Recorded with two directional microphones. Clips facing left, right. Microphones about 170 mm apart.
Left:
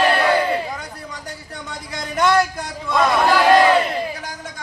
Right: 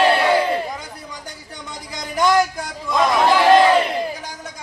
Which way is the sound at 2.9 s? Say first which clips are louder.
Even; 15° right (ahead or behind).